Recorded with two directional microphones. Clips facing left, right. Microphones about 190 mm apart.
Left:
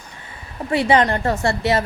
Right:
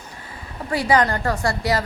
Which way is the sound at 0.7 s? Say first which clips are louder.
Left 2 dB; 25° left (ahead or behind).